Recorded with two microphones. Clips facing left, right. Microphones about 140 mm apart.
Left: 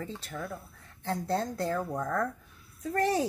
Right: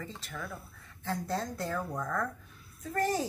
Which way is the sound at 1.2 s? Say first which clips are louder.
Left 6 dB; 30° left (ahead or behind).